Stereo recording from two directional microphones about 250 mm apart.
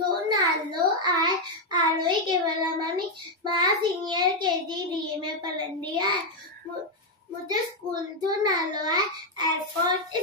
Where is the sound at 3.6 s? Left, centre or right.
Centre.